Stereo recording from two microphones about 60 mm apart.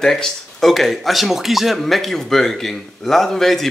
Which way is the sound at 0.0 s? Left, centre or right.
Centre.